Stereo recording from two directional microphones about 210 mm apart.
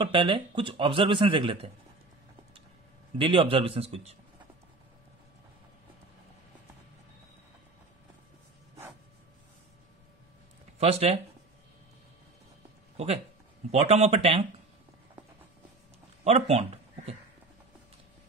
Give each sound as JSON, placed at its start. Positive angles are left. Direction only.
{"t": 0.0, "sound": "speech", "side_deg": -25}
{"t": 3.2, "sound": "speech", "side_deg": -25}
{"t": 10.8, "sound": "speech", "side_deg": -30}
{"t": 12.9, "sound": "speech", "side_deg": -30}
{"t": 16.3, "sound": "speech", "side_deg": -30}